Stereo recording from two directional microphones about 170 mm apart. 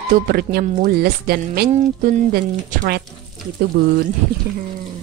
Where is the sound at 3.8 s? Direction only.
65° right (ahead or behind).